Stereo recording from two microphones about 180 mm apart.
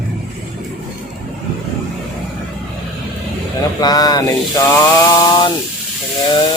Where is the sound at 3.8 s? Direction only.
20° left (ahead or behind).